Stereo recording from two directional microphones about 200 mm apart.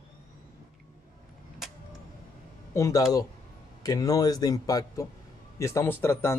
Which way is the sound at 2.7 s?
15° left (ahead or behind).